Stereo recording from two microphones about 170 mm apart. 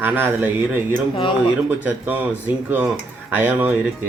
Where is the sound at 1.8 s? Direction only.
10° right (ahead or behind).